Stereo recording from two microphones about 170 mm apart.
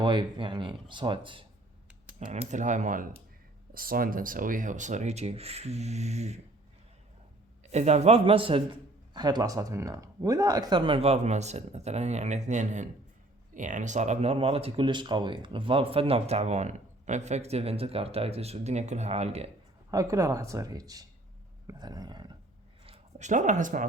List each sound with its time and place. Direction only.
0.0 s speech: 25° right (ahead or behind)
2.1 s speech: 45° right (ahead or behind)
7.6 s speech: 40° right (ahead or behind)
19.9 s speech: 20° right (ahead or behind)
22.9 s speech: 45° right (ahead or behind)